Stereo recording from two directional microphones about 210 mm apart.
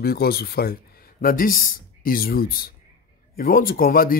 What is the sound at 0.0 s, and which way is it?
Speech, 50° left (ahead or behind).